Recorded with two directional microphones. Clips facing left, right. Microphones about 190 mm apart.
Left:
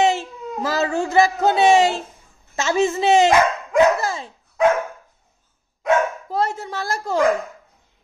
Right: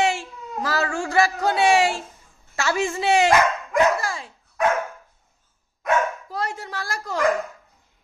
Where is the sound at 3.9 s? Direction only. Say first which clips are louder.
Left 4 dB; 20° left (ahead or behind).